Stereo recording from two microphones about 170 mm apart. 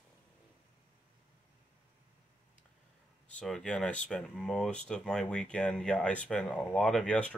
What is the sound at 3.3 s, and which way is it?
Speech, 5° left (ahead or behind).